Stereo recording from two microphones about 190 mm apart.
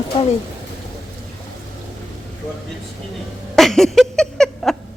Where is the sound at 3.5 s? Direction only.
Centre (ahead or behind).